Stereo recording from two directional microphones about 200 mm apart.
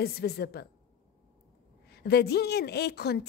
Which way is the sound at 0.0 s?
50° left (ahead or behind).